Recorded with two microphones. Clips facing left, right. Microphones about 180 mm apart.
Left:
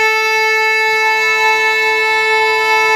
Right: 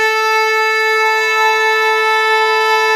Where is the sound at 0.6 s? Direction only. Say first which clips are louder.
Right 1 dB; 15° left (ahead or behind).